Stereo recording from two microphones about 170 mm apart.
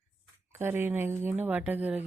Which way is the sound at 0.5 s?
15° right (ahead or behind).